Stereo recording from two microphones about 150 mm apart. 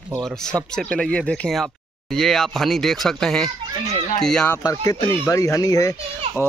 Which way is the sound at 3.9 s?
55° left (ahead or behind).